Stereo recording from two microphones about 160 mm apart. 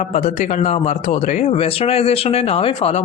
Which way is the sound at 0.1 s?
45° left (ahead or behind).